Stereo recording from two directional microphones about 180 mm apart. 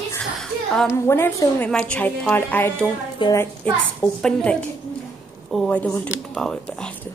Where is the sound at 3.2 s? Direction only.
20° left (ahead or behind).